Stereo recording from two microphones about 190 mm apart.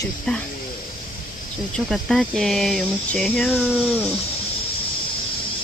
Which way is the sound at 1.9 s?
Centre (ahead or behind).